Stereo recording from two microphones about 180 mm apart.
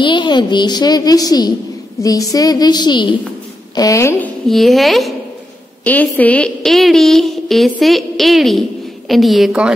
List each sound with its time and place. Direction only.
0.0 s a woman's voice: 25° left (ahead or behind)
4.5 s a woman's voice: centre (ahead or behind)